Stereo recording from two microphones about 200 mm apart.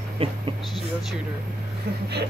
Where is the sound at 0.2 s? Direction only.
30° right (ahead or behind).